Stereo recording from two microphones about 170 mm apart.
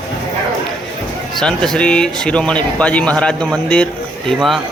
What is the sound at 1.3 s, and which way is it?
Speech, 5° left (ahead or behind).